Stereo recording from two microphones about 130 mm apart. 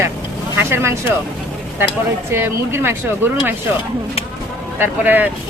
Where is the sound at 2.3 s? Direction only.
15° right (ahead or behind).